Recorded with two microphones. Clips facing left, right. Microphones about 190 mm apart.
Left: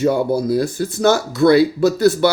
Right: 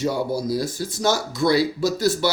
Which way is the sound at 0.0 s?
55° left (ahead or behind).